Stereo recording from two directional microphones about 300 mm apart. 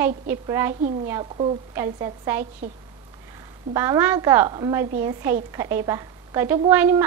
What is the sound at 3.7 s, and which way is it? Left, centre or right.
A woman's voice, centre.